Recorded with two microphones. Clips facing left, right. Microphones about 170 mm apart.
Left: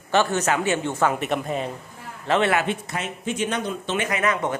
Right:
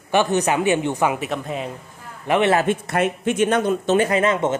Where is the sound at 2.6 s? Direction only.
55° right (ahead or behind).